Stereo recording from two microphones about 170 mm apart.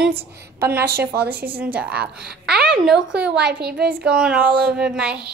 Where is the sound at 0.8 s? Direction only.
70° right (ahead or behind).